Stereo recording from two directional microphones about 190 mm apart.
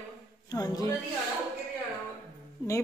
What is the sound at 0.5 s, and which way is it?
Speech, 20° left (ahead or behind).